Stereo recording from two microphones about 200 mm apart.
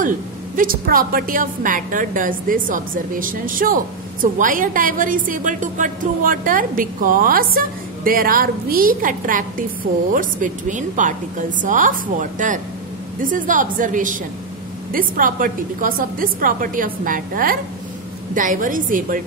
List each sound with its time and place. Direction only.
0.6 s a woman's voice: 45° right (ahead or behind)